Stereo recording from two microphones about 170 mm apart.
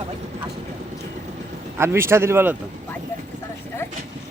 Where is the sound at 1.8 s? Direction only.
15° right (ahead or behind).